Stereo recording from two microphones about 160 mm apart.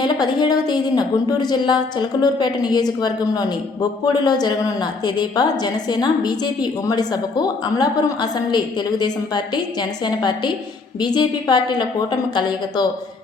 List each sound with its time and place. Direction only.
0.0 s a woman's voice: 25° left (ahead or behind)